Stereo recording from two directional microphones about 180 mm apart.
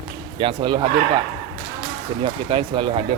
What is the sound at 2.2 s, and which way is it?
Speech, 25° right (ahead or behind).